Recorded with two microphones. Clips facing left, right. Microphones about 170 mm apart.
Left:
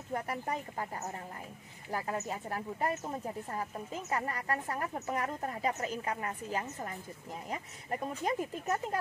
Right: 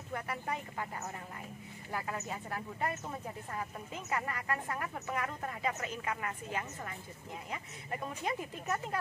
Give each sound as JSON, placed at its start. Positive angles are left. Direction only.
{"t": 0.1, "sound": "a woman's voice", "side_deg": 35}
{"t": 1.9, "sound": "a woman's voice", "side_deg": 40}